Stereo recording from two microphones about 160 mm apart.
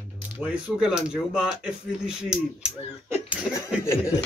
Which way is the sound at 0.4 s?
10° right (ahead or behind).